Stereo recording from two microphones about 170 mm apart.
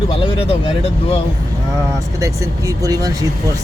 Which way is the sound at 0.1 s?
35° left (ahead or behind).